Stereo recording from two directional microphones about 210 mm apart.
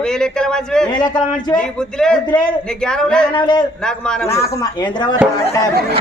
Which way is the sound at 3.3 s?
20° left (ahead or behind).